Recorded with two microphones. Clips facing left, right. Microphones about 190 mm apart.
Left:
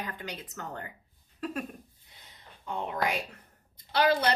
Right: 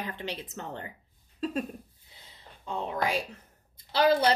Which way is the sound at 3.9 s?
25° right (ahead or behind).